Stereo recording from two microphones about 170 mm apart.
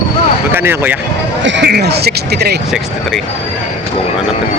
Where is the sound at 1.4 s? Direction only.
90° right; by 2.6 s 70° right (ahead or behind).